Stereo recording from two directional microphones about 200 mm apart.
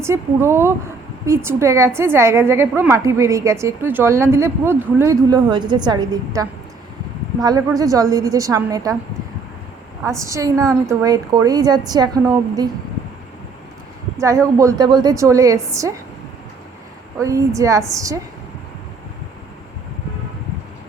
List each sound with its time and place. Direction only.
0.0 s speech: 15° right (ahead or behind)
10.0 s a woman's voice: 15° right (ahead or behind)
14.2 s speech: 15° right (ahead or behind)
17.2 s speech: 15° right (ahead or behind)